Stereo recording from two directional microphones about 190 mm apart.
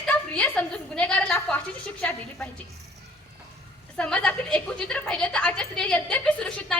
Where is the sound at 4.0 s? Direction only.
5° left (ahead or behind).